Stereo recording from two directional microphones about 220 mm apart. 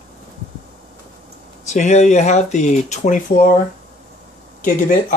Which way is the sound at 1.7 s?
30° left (ahead or behind).